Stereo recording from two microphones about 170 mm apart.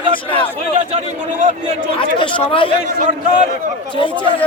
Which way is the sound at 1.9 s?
30° left (ahead or behind).